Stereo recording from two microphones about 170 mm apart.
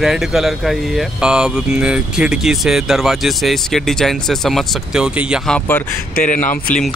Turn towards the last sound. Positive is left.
turn(degrees=50)  # may be behind; listen again after turning